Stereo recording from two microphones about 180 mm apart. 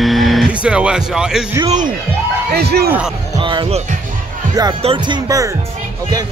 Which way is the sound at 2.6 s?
60° right (ahead or behind).